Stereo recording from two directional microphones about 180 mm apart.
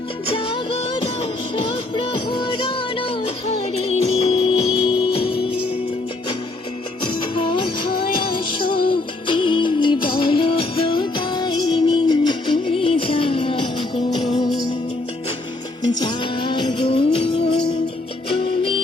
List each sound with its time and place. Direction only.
0.3 s music: 30° left (ahead or behind)
7.3 s music: 25° left (ahead or behind)
15.9 s music: 25° left (ahead or behind)